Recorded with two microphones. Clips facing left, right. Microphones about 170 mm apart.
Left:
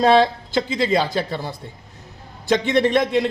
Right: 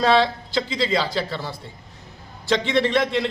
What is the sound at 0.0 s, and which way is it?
Speech, 50° left (ahead or behind).